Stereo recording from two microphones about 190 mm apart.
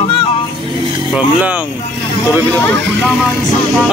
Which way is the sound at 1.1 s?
5° right (ahead or behind).